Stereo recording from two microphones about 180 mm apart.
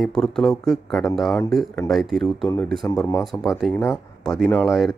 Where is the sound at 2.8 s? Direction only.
10° left (ahead or behind).